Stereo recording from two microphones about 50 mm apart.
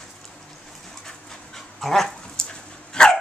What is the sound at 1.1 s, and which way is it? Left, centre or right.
Dog, centre.